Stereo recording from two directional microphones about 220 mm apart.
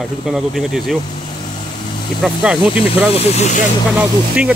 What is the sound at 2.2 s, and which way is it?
Speech, 5° right (ahead or behind).